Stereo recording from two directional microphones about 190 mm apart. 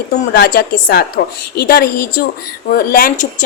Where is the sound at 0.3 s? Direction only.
55° left (ahead or behind).